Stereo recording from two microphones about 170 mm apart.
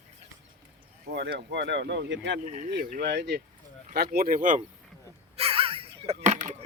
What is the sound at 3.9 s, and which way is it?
Speech, 60° right (ahead or behind).